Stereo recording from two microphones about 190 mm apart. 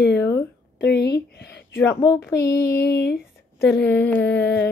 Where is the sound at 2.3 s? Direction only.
55° left (ahead or behind).